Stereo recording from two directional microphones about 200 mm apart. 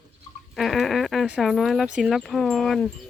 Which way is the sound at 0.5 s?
Centre (ahead or behind).